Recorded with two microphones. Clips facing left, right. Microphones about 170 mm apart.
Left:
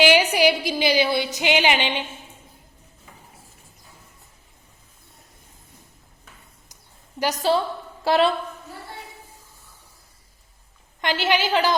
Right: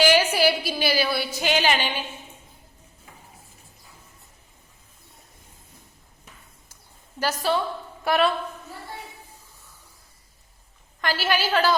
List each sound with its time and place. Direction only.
0.0 s a sound: 15° left (ahead or behind)
7.2 s a woman's voice: 20° left (ahead or behind)
11.0 s a woman's voice: 20° left (ahead or behind)